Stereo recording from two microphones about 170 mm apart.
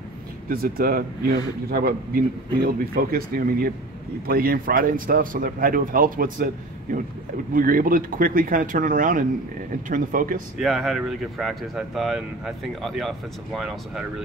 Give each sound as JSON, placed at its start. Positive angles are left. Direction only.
{"t": 0.5, "sound": "a man's voice", "side_deg": -60}
{"t": 10.6, "sound": "speech", "side_deg": 0}